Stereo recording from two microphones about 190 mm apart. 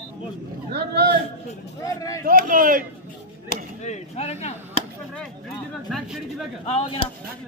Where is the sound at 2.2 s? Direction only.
45° right (ahead or behind).